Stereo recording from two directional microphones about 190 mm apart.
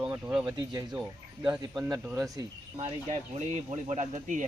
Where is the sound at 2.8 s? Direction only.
35° right (ahead or behind).